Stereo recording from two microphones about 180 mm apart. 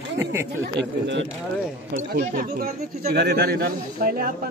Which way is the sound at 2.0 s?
50° right (ahead or behind).